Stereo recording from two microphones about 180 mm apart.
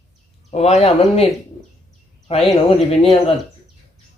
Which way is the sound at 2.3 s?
35° left (ahead or behind).